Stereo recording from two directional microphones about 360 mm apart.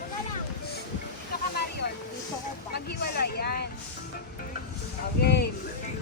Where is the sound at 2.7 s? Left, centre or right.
Left.